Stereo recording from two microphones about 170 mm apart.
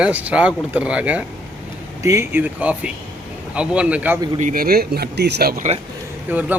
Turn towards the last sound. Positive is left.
turn(degrees=-10)  # may be behind; listen again after turning